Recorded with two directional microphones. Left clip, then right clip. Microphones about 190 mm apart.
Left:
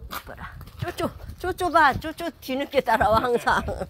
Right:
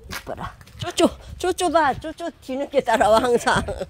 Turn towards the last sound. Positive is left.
turn(degrees=-35)  # may be behind; listen again after turning